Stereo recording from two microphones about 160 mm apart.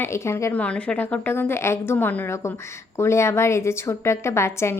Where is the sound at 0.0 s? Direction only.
15° left (ahead or behind).